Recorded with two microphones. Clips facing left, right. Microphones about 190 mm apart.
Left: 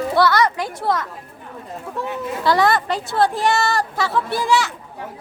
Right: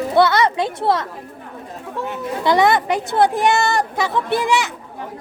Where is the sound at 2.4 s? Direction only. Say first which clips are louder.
Right 2 dB; 20° right (ahead or behind).